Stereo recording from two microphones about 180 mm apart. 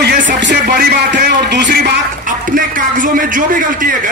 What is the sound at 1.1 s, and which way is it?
Speech, 70° right (ahead or behind).